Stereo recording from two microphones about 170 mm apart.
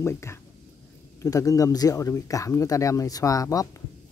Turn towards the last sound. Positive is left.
turn(degrees=20)  # may be behind; listen again after turning